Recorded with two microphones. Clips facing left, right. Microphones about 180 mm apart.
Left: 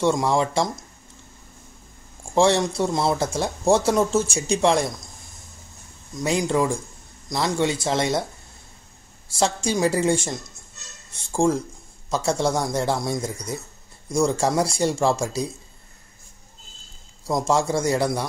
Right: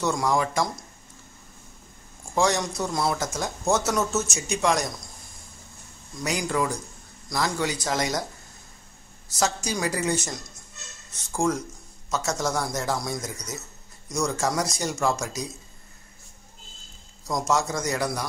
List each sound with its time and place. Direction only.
0.0 s speech: 25° left (ahead or behind)
2.3 s speech: 30° left (ahead or behind)
6.1 s speech: 25° left (ahead or behind)
9.3 s speech: 30° left (ahead or behind)
17.3 s speech: 30° left (ahead or behind)